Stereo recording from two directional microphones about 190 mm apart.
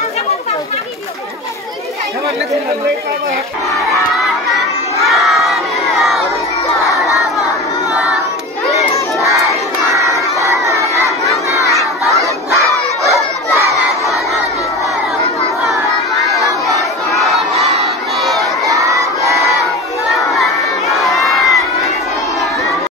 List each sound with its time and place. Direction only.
5.0 s crowd: centre (ahead or behind)
6.8 s crowd: 15° left (ahead or behind)
7.9 s choir: 5° right (ahead or behind)
9.9 s crowd: 15° right (ahead or behind)
12.2 s crowd: 15° right (ahead or behind)
17.6 s crowd: 35° right (ahead or behind)
18.4 s crowd: 15° right (ahead or behind)
21.0 s crowd: centre (ahead or behind)